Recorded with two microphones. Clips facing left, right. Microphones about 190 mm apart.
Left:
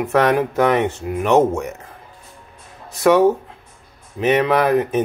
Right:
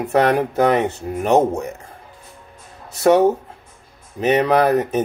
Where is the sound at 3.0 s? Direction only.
35° right (ahead or behind).